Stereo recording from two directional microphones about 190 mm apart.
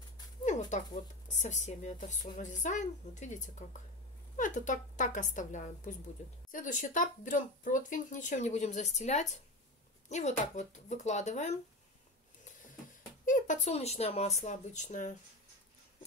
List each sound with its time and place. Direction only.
0.5 s speech: 40° left (ahead or behind)
13.2 s speech: 40° left (ahead or behind)